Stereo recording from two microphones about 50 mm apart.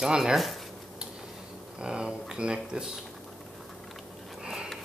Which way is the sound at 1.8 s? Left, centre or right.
Centre.